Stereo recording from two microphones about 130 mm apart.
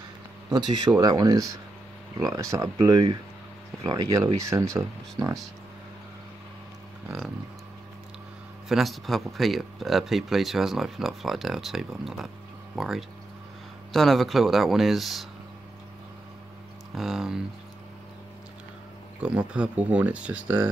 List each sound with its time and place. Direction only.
0.5 s speech: 35° right (ahead or behind)
2.5 s speech: 25° right (ahead or behind)
8.6 s speech: centre (ahead or behind)
16.9 s speech: centre (ahead or behind)
19.2 s speech: 10° right (ahead or behind)